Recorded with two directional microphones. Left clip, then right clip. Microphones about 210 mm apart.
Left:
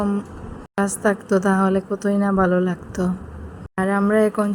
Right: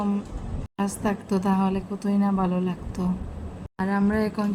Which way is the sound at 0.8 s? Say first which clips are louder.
Left 8 dB; 15° left (ahead or behind).